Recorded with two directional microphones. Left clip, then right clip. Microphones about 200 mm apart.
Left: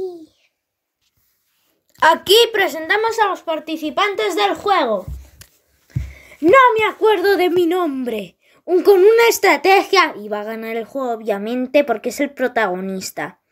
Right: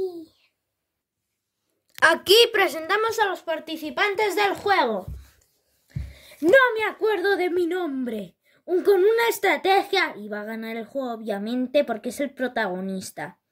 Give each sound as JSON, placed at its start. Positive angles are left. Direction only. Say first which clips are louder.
{"t": 1.9, "sound": "speech", "louder": "left 5 dB", "side_deg": -20}
{"t": 6.5, "sound": "speech", "louder": "left 7 dB", "side_deg": -15}